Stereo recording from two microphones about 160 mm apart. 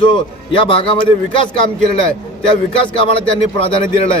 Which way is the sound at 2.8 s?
35° left (ahead or behind).